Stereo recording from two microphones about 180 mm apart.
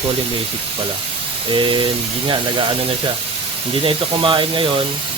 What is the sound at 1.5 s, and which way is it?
Speech, 25° right (ahead or behind).